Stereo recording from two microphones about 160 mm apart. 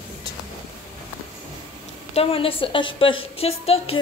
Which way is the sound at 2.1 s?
35° left (ahead or behind).